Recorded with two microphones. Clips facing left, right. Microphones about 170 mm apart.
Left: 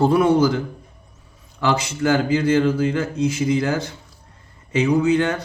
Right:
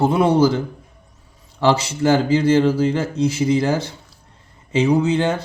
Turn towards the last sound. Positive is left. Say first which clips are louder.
# even
turn(degrees=-25)  # may be behind; listen again after turning